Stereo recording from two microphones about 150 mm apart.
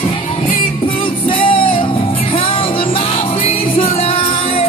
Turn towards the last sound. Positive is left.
turn(degrees=40)  # may be behind; listen again after turning